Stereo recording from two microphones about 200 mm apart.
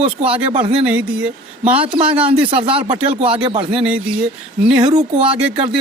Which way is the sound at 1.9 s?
25° right (ahead or behind).